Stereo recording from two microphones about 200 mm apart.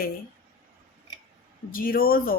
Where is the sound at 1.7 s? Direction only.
45° left (ahead or behind).